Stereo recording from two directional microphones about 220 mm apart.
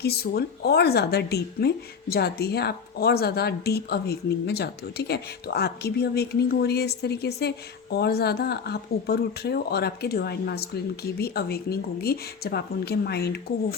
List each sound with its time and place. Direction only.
0.0 s speech: 45° left (ahead or behind)